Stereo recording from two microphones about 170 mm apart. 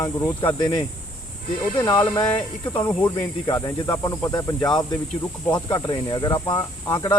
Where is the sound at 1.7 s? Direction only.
20° left (ahead or behind).